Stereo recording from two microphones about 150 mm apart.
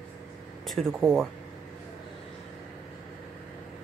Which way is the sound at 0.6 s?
5° left (ahead or behind).